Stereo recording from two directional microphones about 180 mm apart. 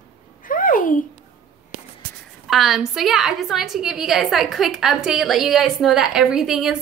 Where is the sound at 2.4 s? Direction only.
Centre (ahead or behind).